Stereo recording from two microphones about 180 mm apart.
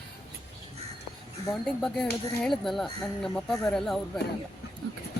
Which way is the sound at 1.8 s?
Centre (ahead or behind).